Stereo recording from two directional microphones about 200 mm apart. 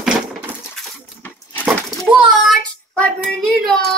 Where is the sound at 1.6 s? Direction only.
5° right (ahead or behind).